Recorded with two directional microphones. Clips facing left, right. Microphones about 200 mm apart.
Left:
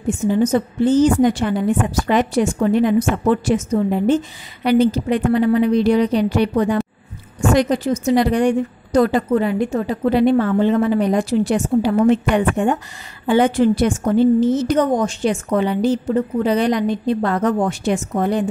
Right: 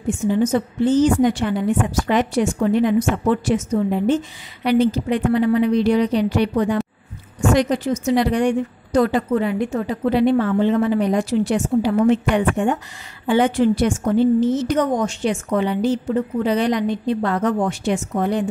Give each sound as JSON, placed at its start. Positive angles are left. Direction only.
{"t": 0.3, "sound": "a woman's voice", "side_deg": 40}